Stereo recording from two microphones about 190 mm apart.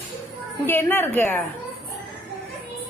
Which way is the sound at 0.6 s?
10° left (ahead or behind).